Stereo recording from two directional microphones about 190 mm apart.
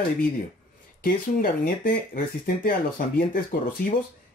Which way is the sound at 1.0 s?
50° left (ahead or behind).